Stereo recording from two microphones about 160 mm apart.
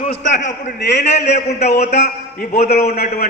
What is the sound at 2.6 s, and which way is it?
Speech, 75° left (ahead or behind).